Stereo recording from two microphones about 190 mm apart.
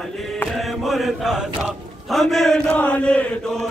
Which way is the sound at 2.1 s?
Centre (ahead or behind).